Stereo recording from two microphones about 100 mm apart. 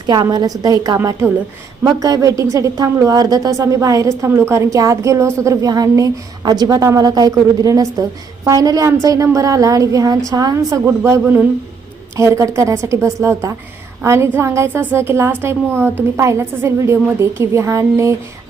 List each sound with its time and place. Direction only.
0.0 s speech: 45° right (ahead or behind)
0.9 s a woman's voice: 25° right (ahead or behind)